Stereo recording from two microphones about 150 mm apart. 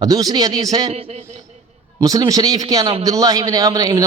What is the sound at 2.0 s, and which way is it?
A man's voice, 25° right (ahead or behind).